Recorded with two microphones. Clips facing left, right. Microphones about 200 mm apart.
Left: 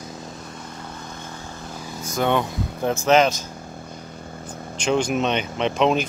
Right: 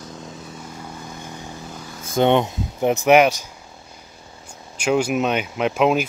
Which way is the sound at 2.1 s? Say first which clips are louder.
Right 5 dB; 20° right (ahead or behind).